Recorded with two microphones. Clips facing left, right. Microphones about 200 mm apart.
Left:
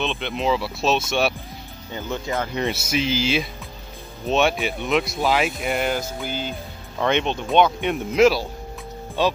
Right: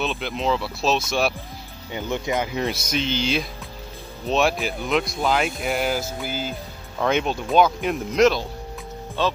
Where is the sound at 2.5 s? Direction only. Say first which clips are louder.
Left 1 dB; centre (ahead or behind).